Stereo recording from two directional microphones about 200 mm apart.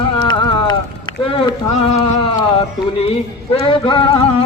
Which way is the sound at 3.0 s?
30° left (ahead or behind).